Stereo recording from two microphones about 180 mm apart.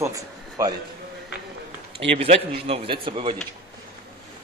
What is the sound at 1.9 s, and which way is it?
Speech, 35° right (ahead or behind).